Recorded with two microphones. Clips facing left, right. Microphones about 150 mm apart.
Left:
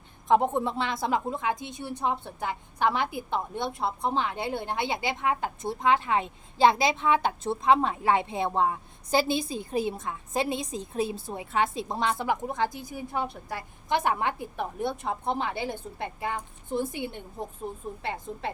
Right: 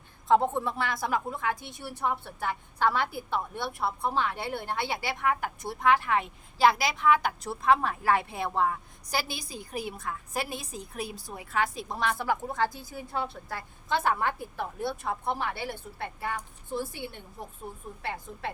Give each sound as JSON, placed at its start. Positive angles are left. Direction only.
{"t": 0.3, "sound": "a woman's voice", "side_deg": 20}